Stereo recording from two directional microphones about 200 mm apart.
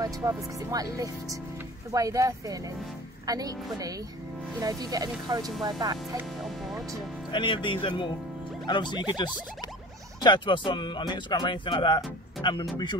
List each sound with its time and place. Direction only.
0.0 s speech: 15° right (ahead or behind)
5.5 s speech: centre (ahead or behind)
5.8 s speech: 15° right (ahead or behind)
6.4 s music: centre (ahead or behind)
7.2 s speech: 25° left (ahead or behind)